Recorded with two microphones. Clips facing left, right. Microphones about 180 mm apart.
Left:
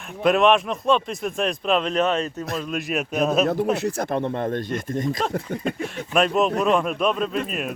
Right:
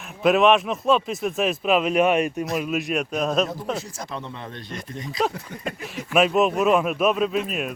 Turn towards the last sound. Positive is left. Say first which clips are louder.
# right 2 dB
turn(degrees=0)  # may be behind; listen again after turning